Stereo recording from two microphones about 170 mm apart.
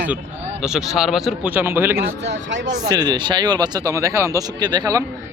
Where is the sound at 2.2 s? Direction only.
90° right.